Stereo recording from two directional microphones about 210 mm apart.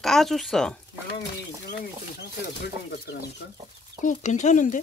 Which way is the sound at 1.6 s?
50° left (ahead or behind).